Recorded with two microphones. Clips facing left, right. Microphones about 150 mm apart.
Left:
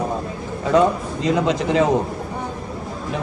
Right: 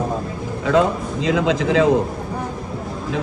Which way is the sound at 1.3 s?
90° right.